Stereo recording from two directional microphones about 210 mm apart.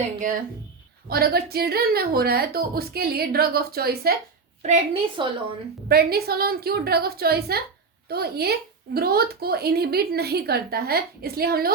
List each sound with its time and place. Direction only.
1.0 s speech: 45° right (ahead or behind)
4.6 s a woman's voice: 25° right (ahead or behind)
5.9 s speech: 50° right (ahead or behind)